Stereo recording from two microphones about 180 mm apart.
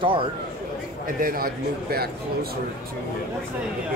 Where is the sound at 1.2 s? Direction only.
55° right (ahead or behind).